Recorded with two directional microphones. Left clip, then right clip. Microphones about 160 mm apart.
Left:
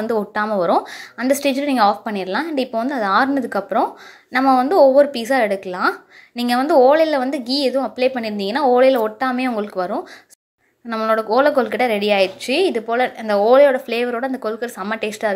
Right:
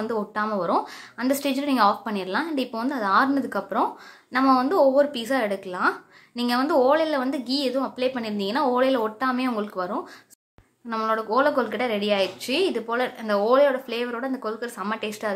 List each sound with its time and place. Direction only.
0.0 s a woman's voice: 30° left (ahead or behind)
11.1 s a woman's voice: 25° left (ahead or behind)